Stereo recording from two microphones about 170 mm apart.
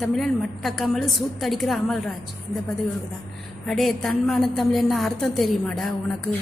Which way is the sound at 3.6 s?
Centre (ahead or behind).